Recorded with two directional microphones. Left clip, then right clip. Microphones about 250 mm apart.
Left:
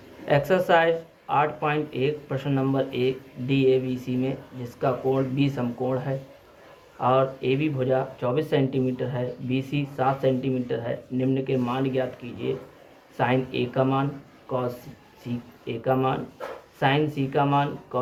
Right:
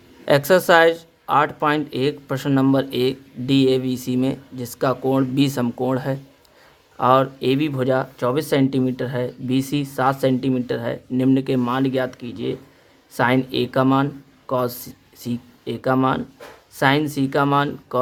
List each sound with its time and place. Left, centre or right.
0.3 s speech: right